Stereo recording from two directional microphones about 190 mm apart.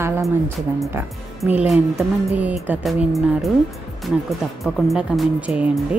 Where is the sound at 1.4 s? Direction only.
5° right (ahead or behind).